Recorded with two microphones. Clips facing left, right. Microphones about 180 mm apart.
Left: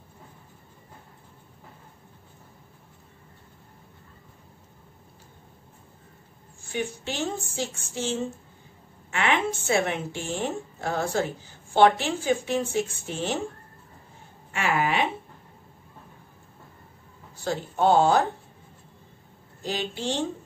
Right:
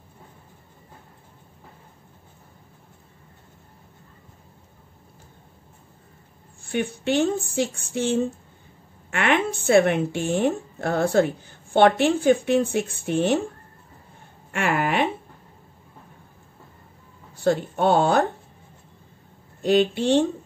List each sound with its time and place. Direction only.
6.6 s a woman's voice: 60° right (ahead or behind)
14.5 s speech: 55° right (ahead or behind)
17.4 s a woman's voice: 60° right (ahead or behind)
19.6 s a woman's voice: 60° right (ahead or behind)